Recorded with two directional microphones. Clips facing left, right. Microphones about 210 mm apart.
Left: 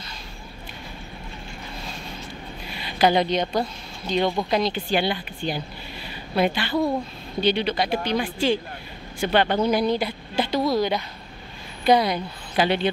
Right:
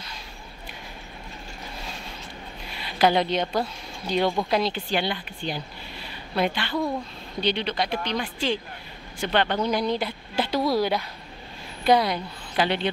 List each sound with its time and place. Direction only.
2.8 s a woman's voice: centre (ahead or behind)